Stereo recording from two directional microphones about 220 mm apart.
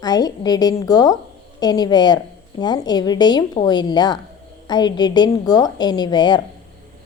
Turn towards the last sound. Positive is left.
turn(degrees=20)  # may be behind; listen again after turning